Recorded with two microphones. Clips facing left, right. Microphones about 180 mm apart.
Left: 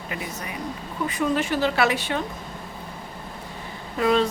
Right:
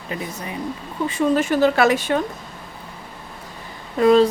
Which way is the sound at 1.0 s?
30° right (ahead or behind).